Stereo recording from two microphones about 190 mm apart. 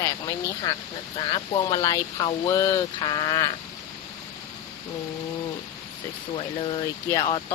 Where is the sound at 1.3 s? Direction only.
20° left (ahead or behind).